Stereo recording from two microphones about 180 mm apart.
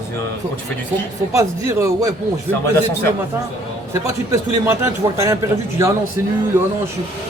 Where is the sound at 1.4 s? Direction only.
15° right (ahead or behind).